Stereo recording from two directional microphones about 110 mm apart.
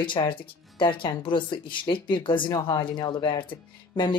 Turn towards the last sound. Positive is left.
turn(degrees=45)  # may be behind; listen again after turning